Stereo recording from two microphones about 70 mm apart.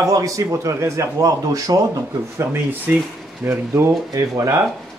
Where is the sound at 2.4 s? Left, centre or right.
Right.